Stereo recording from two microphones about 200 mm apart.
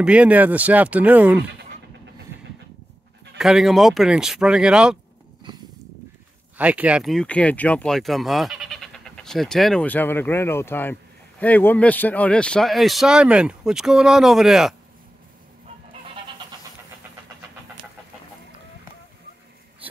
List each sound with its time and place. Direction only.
0.0 s speech: 5° right (ahead or behind)
3.3 s speech: centre (ahead or behind)
5.5 s a sound: 20° right (ahead or behind)
6.6 s speech: 5° right (ahead or behind)